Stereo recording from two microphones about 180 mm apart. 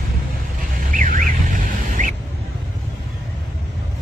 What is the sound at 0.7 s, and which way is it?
Duck, 50° right (ahead or behind).